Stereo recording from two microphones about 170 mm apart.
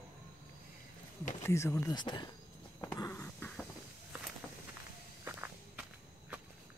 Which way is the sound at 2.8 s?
15° left (ahead or behind).